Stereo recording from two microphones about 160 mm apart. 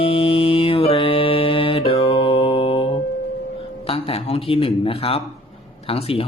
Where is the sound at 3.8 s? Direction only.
40° left (ahead or behind).